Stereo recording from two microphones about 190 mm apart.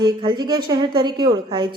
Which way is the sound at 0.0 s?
25° right (ahead or behind).